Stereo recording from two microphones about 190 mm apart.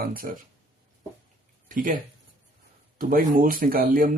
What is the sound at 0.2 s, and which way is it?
Speech, 45° right (ahead or behind).